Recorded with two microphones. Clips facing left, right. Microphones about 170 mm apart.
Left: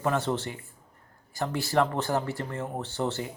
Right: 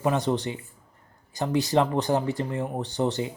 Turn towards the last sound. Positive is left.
turn(degrees=-15)  # may be behind; listen again after turning